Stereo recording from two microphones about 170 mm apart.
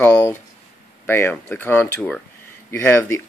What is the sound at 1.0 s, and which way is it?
Speech, 15° left (ahead or behind).